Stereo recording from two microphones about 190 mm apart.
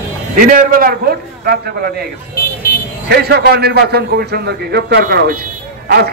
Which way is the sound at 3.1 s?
55° right (ahead or behind).